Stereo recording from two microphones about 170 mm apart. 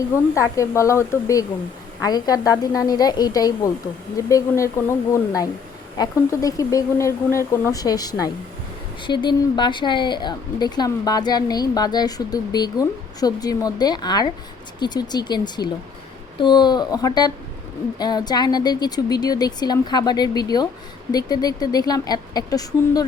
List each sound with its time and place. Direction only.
0.3 s a woman's voice: 15° left (ahead or behind)